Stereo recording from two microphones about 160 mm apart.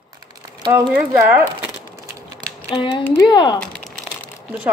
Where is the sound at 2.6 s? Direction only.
35° left (ahead or behind).